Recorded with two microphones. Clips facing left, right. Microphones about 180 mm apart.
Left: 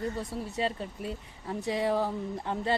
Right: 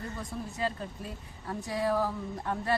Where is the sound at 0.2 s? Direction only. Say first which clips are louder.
Left 2 dB; 25° left (ahead or behind).